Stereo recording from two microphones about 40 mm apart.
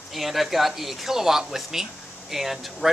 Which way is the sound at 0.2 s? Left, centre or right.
Centre.